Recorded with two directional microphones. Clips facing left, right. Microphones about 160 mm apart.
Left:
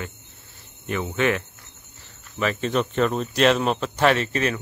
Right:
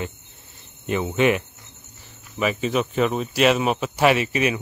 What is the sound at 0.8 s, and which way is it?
Speech, 20° right (ahead or behind).